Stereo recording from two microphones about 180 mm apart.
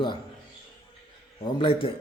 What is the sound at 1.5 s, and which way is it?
Speech, 30° left (ahead or behind).